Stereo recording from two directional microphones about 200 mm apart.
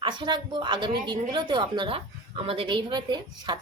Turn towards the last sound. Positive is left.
turn(degrees=-20)  # may be behind; listen again after turning